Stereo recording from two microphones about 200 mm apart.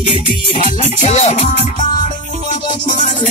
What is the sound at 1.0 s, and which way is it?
Music, 35° left (ahead or behind).